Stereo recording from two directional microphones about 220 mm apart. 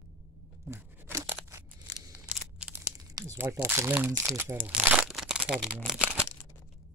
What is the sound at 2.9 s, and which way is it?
Speech, 15° right (ahead or behind).